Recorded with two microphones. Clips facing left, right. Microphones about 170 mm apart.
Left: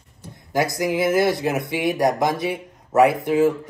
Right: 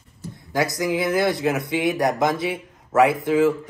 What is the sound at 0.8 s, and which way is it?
Speech, 20° left (ahead or behind).